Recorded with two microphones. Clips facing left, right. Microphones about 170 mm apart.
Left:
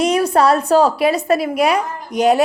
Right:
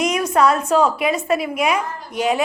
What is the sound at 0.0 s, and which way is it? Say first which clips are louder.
A woman's voice: left 3 dB; 30° left (ahead or behind).